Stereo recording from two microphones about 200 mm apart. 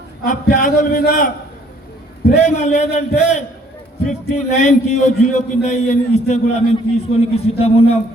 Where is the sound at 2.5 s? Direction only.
35° left (ahead or behind).